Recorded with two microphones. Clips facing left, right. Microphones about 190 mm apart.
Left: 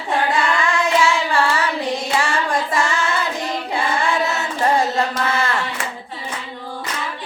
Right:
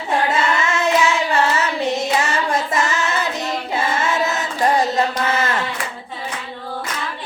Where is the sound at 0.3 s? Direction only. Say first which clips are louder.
Even; 25° right (ahead or behind).